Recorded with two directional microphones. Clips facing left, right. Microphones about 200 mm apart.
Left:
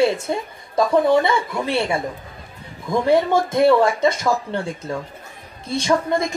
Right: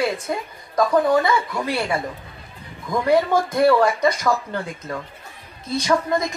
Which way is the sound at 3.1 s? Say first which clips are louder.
Left 1 dB; 25° left (ahead or behind).